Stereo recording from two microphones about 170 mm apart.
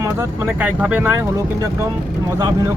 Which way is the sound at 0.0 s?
15° right (ahead or behind).